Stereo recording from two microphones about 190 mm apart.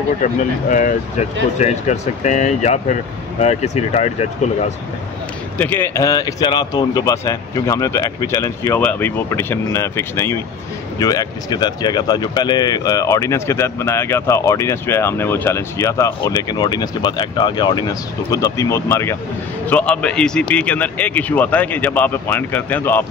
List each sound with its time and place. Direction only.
0.2 s speech: 45° left (ahead or behind)
5.6 s speech: 10° left (ahead or behind)